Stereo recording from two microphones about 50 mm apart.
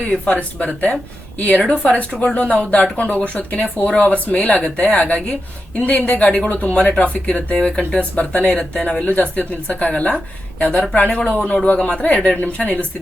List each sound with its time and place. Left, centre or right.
0.0 s a woman's voice: left
1.7 s speech: left
9.0 s speech: left